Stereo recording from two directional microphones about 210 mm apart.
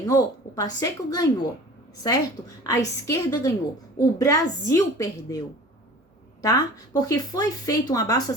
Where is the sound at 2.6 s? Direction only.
15° left (ahead or behind).